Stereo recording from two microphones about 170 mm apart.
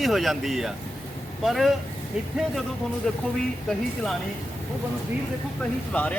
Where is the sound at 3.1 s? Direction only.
5° left (ahead or behind).